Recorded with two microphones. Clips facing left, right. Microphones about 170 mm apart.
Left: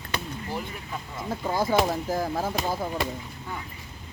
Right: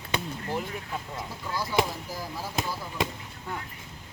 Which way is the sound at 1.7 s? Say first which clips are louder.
Left 2 dB; 50° left (ahead or behind).